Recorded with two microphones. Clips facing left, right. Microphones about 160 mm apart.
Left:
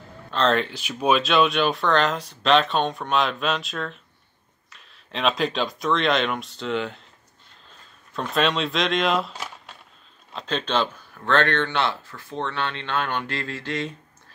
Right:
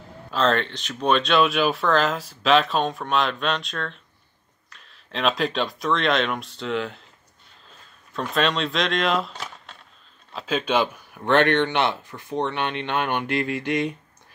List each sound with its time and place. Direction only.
0.3 s speech: centre (ahead or behind)
8.1 s speech: centre (ahead or behind)
10.3 s speech: 5° right (ahead or behind)